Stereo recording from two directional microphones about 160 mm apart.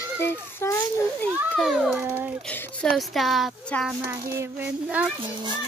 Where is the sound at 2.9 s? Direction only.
Centre (ahead or behind).